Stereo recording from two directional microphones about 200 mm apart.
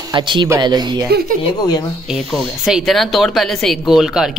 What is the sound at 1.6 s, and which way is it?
Speech, 20° left (ahead or behind).